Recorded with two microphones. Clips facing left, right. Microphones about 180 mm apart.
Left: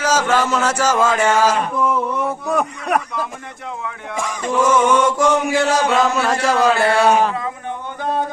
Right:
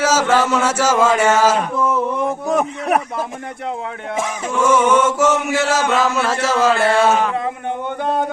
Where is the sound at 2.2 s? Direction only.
20° right (ahead or behind).